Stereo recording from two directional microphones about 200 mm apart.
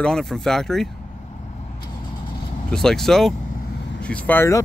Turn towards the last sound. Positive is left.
turn(degrees=10)  # may be behind; listen again after turning